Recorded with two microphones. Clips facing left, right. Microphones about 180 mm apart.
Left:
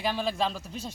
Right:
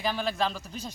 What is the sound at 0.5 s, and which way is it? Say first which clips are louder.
Speech: left 1 dB; 30° left (ahead or behind).